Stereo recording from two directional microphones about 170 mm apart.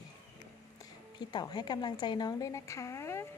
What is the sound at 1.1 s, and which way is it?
Speech, 25° left (ahead or behind).